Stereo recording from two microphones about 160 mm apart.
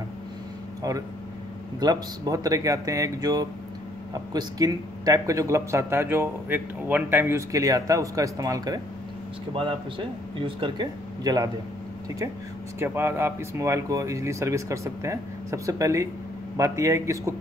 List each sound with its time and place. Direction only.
1.8 s speech: 25° right (ahead or behind)
12.7 s speech: 15° right (ahead or behind)